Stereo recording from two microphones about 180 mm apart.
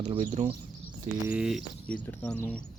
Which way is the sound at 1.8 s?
10° left (ahead or behind).